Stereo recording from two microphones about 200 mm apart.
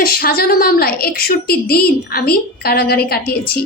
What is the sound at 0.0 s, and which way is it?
A woman's voice, 50° left (ahead or behind).